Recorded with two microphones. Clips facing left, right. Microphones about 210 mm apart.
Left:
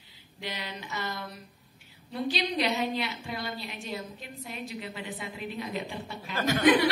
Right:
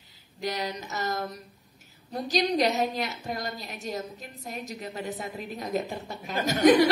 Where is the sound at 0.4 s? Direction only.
40° right (ahead or behind).